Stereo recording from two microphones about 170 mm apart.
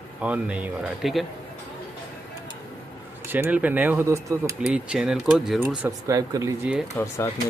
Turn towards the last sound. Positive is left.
turn(degrees=15)  # may be behind; listen again after turning